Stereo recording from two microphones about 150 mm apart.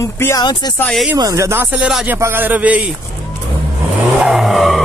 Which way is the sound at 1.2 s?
20° right (ahead or behind).